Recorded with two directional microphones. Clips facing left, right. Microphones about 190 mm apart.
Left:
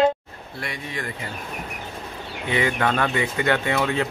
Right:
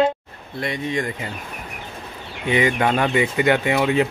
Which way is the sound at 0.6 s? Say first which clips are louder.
Right 8 dB; 20° right (ahead or behind).